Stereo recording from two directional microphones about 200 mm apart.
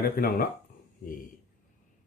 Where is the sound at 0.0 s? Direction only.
45° left (ahead or behind).